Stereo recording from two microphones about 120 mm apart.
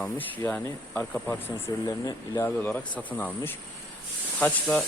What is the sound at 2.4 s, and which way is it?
Speech, 15° left (ahead or behind).